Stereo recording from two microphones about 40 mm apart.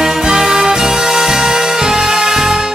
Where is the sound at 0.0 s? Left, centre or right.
Centre.